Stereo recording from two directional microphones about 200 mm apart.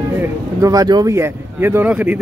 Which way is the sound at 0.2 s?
15° right (ahead or behind).